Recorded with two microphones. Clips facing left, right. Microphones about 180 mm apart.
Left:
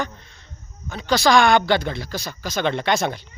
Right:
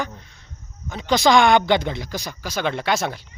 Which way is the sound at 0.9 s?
20° right (ahead or behind).